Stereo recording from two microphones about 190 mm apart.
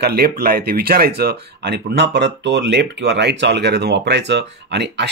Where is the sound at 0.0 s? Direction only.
55° right (ahead or behind).